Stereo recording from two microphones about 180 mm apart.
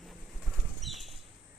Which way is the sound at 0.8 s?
Centre (ahead or behind).